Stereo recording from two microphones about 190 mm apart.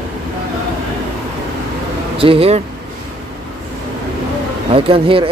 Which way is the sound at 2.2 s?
30° right (ahead or behind).